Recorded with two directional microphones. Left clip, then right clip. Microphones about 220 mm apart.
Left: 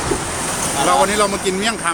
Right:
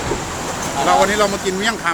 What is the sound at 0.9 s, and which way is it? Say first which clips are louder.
Speech: right 1 dB; 15° left (ahead or behind).